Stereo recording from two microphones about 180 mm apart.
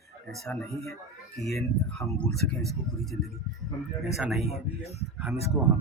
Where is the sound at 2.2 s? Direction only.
5° left (ahead or behind).